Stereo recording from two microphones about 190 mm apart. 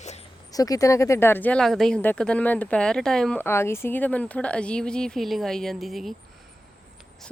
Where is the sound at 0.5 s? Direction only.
20° left (ahead or behind); by 6.1 s centre (ahead or behind).